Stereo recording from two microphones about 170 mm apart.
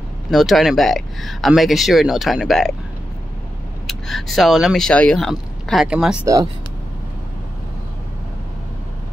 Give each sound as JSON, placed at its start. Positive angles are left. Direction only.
{"t": 0.3, "sound": "speech", "side_deg": 0}
{"t": 3.8, "sound": "speech", "side_deg": 0}
{"t": 6.2, "sound": "speech", "side_deg": -20}